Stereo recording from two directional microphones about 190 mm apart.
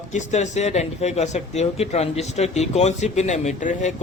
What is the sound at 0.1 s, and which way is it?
Speech, 35° left (ahead or behind).